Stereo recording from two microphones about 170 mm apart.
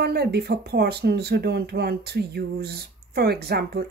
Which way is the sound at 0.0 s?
70° right (ahead or behind).